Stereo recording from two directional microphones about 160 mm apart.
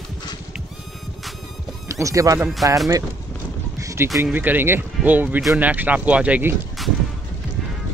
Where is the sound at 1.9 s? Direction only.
20° right (ahead or behind).